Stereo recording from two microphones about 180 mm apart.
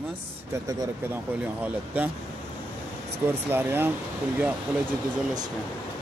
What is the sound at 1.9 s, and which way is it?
Speech, 10° right (ahead or behind).